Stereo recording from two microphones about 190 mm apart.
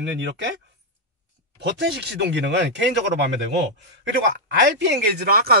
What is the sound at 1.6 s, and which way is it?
Speech, 65° right (ahead or behind).